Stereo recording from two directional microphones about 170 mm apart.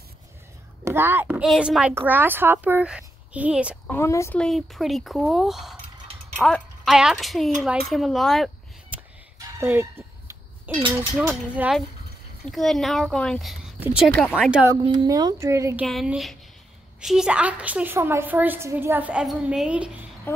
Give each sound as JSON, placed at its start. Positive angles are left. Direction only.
{"t": 0.8, "sound": "speech", "side_deg": -15}
{"t": 3.9, "sound": "a woman's voice", "side_deg": 15}
{"t": 4.4, "sound": "a woman's voice", "side_deg": 0}
{"t": 8.9, "sound": "fowl", "side_deg": -10}
{"t": 9.4, "sound": "chicken", "side_deg": -15}
{"t": 11.0, "sound": "a woman's voice", "side_deg": -10}
{"t": 14.7, "sound": "speech", "side_deg": -25}
{"t": 15.8, "sound": "a woman's voice", "side_deg": -5}
{"t": 20.3, "sound": "speech", "side_deg": 10}